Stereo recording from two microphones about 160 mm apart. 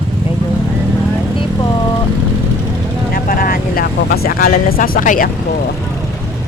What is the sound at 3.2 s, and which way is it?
Speech, 65° left (ahead or behind).